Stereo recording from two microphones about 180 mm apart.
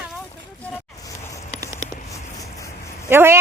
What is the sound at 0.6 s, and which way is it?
Vehicle, 10° left (ahead or behind).